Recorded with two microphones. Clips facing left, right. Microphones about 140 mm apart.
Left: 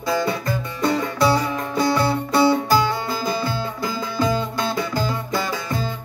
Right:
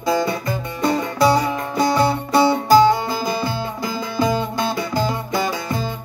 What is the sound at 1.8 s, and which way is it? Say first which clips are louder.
Music: right 3 dB; 15° right (ahead or behind).